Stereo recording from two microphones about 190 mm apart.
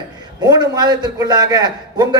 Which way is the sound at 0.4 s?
20° right (ahead or behind).